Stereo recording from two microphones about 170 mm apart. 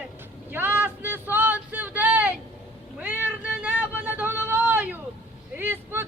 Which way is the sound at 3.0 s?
10° right (ahead or behind).